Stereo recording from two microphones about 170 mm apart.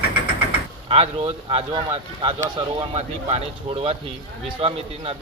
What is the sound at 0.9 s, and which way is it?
Speech, 35° right (ahead or behind).